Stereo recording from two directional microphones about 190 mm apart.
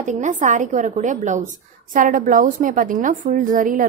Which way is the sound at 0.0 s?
40° right (ahead or behind).